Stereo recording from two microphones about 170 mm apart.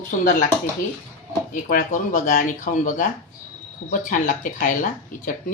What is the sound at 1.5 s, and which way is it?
Speech, 50° left (ahead or behind).